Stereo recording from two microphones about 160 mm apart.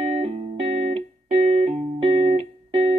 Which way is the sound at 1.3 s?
45° right (ahead or behind).